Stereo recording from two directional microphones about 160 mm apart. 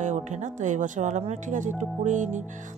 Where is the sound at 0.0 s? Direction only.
50° right (ahead or behind).